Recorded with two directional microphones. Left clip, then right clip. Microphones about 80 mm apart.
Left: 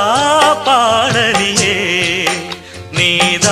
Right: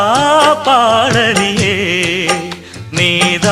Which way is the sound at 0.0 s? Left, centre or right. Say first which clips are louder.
Right 1 dB; left.